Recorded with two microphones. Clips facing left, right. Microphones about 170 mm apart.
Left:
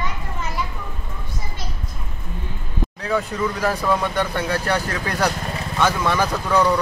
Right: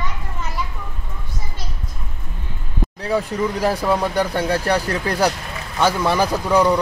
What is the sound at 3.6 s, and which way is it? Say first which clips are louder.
Speech: right 2 dB; 10° right (ahead or behind).